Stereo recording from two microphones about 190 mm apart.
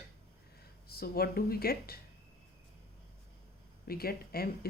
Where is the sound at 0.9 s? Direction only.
55° left (ahead or behind).